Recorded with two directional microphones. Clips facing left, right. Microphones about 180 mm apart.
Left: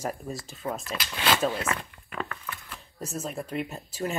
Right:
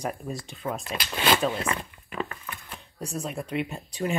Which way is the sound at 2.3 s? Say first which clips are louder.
Even; 20° right (ahead or behind).